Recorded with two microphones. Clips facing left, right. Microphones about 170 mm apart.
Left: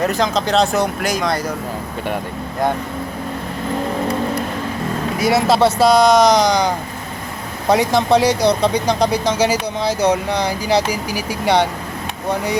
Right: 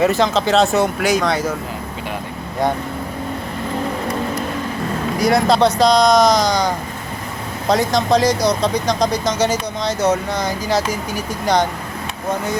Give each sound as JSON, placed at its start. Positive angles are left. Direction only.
{"t": 0.0, "sound": "speech", "side_deg": -5}
{"t": 5.2, "sound": "speech", "side_deg": 5}
{"t": 11.1, "sound": "speech", "side_deg": 70}